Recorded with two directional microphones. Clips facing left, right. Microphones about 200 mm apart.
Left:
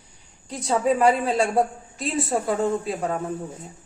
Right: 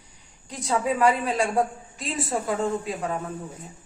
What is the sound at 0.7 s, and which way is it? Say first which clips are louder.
Speech: left 3 dB; 30° left (ahead or behind).